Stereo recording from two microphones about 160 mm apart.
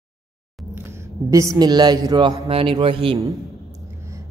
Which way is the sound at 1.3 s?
20° right (ahead or behind).